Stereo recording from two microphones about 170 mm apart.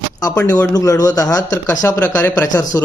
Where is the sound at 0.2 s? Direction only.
20° left (ahead or behind).